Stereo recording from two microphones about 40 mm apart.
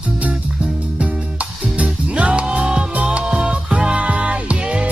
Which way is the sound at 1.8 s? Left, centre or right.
Right.